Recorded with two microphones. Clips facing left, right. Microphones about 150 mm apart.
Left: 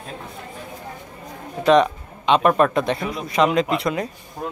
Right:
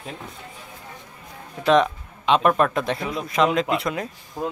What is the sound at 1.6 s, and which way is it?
A man's voice, centre (ahead or behind).